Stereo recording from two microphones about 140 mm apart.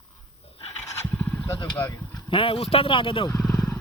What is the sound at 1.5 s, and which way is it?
Speech, 15° left (ahead or behind).